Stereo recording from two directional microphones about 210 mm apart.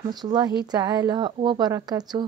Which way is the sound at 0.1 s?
20° right (ahead or behind).